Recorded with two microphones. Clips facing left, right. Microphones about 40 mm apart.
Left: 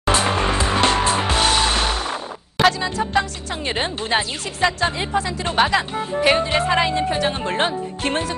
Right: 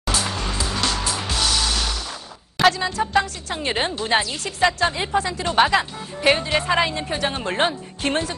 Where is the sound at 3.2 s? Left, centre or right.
Centre.